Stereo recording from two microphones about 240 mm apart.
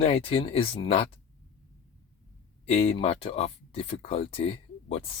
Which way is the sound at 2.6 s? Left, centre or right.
Left.